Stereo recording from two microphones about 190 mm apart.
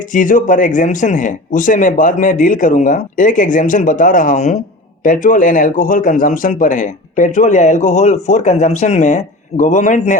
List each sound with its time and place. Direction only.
0.0 s a man's voice: 45° left (ahead or behind)